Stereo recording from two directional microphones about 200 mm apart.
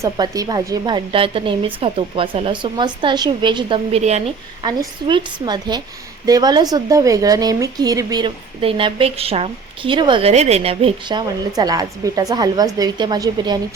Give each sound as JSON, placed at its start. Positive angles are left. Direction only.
{"t": 0.0, "sound": "a woman's voice", "side_deg": -20}